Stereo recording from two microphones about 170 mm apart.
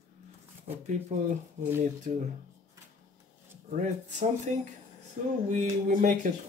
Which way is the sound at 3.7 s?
45° right (ahead or behind).